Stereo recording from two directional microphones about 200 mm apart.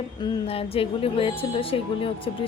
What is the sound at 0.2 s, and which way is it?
A woman's voice, 25° left (ahead or behind).